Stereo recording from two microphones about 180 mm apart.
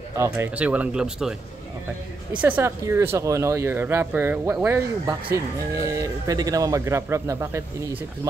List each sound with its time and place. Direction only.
0.1 s speech: 15° right (ahead or behind)
2.3 s speech: 10° right (ahead or behind)